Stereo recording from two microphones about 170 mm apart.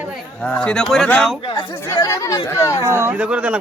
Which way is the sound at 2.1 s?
15° left (ahead or behind).